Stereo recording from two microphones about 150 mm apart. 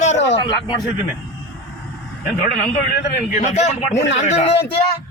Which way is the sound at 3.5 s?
45° left (ahead or behind).